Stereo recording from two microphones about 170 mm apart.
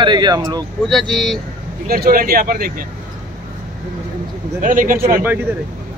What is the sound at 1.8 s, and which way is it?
Speech, 60° right (ahead or behind).